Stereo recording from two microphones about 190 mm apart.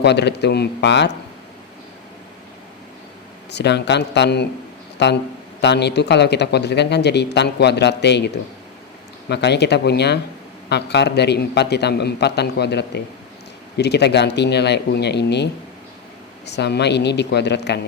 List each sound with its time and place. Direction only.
0.0 s speech: 60° left (ahead or behind)
3.5 s speech: 60° left (ahead or behind)
9.3 s speech: 60° left (ahead or behind)
16.5 s speech: 65° left (ahead or behind)